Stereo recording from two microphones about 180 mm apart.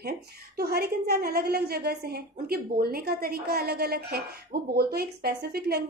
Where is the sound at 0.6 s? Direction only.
60° right (ahead or behind).